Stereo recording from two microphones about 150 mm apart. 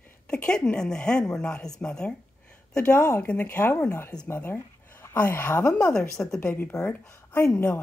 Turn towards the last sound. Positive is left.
turn(degrees=20)  # may be behind; listen again after turning